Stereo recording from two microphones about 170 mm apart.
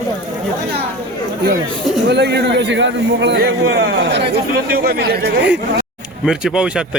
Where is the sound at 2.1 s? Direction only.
80° right.